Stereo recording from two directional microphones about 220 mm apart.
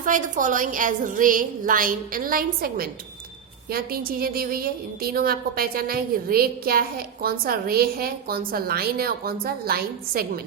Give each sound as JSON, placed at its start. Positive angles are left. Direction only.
{"t": 0.0, "sound": "a woman's voice", "side_deg": -35}